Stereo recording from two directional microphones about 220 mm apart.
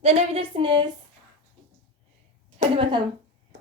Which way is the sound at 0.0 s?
25° right (ahead or behind).